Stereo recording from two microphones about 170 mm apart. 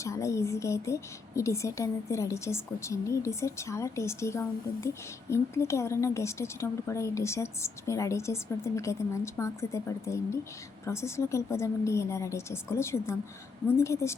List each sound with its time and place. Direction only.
0.0 s a woman's voice: 15° left (ahead or behind)